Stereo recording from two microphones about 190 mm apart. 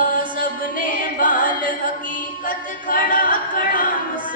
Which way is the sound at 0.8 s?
45° left (ahead or behind).